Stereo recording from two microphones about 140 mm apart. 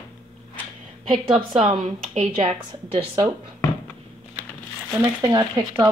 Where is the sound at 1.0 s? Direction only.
40° right (ahead or behind).